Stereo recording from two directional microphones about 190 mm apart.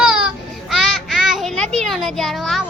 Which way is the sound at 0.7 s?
Centre (ahead or behind).